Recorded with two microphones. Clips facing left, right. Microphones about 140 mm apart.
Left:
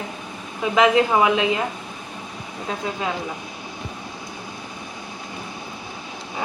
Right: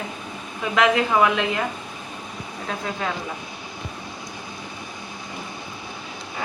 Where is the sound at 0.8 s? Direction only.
15° left (ahead or behind).